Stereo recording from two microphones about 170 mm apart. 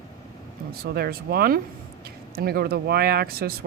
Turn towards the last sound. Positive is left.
turn(degrees=-65)  # may be behind; listen again after turning